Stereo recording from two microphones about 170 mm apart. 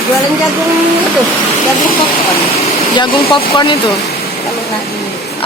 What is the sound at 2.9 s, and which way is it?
Speech, 30° left (ahead or behind).